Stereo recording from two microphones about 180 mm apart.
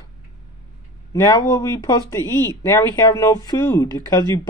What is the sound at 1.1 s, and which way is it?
Speech, 15° left (ahead or behind).